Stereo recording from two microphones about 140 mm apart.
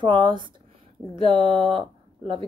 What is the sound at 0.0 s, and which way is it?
Speech, 35° right (ahead or behind).